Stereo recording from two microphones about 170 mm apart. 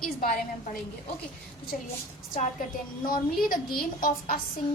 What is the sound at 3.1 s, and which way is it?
A woman's voice, 55° left (ahead or behind).